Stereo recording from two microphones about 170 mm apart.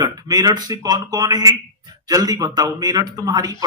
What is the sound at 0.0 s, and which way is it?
A man's voice, 20° right (ahead or behind).